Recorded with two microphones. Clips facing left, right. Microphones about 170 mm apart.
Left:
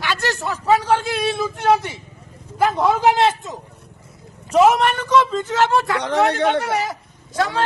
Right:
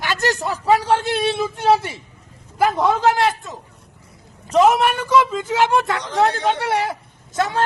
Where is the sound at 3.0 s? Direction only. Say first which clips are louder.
Left 1 dB; 20° left (ahead or behind).